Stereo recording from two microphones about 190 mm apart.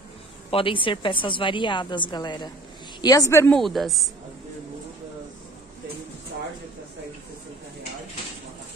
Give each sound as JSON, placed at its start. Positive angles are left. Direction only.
{"t": 0.5, "sound": "a woman's voice", "side_deg": 30}
{"t": 3.5, "sound": "speech", "side_deg": 0}